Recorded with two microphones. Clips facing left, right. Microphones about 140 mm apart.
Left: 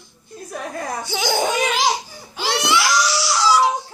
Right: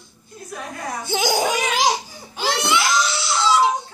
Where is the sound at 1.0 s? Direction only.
15° right (ahead or behind).